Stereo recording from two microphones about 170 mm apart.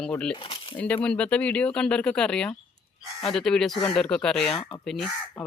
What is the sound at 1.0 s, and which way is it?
Speech, 5° left (ahead or behind).